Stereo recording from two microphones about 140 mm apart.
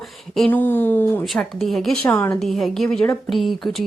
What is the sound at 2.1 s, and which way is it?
Speech, 20° left (ahead or behind).